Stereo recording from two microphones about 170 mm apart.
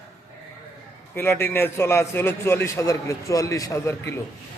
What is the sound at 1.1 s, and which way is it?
A man's voice, 15° left (ahead or behind).